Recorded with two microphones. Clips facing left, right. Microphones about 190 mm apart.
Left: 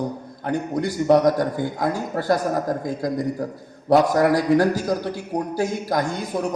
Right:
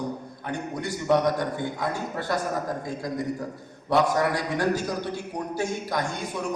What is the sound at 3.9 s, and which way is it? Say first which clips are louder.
A man's voice: left 6 dB; 40° left (ahead or behind).